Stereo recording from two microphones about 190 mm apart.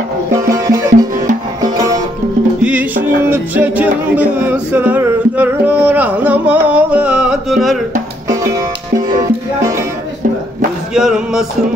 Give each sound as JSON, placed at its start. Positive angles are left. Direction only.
{"t": 0.7, "sound": "music", "side_deg": -15}
{"t": 2.6, "sound": "music", "side_deg": -10}
{"t": 8.3, "sound": "music", "side_deg": -15}
{"t": 11.0, "sound": "music", "side_deg": -5}